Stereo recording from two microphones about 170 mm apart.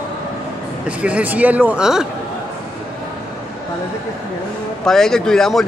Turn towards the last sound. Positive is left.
turn(degrees=0)  # may be behind; listen again after turning